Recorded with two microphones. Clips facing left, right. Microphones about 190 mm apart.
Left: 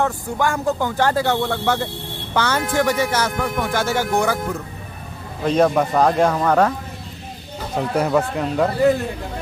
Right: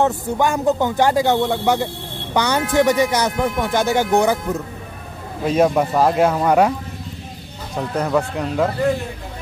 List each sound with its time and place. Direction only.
0.0 s speech: 20° right (ahead or behind)
5.4 s speech: 5° right (ahead or behind)
7.9 s speech: 5° left (ahead or behind)